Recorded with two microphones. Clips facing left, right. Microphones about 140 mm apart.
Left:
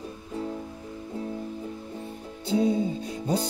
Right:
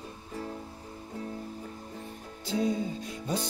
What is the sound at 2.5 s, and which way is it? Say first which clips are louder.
Music: left 5 dB; 30° left (ahead or behind).